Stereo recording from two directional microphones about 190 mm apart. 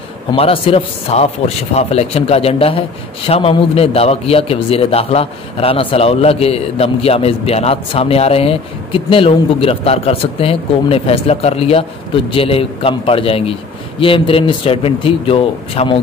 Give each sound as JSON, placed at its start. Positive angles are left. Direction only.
{"t": 0.3, "sound": "a man's voice", "side_deg": 30}